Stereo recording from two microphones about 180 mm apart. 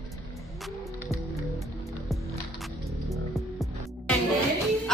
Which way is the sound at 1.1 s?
Centre (ahead or behind).